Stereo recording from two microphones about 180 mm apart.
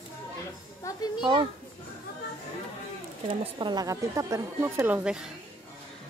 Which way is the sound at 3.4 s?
25° right (ahead or behind).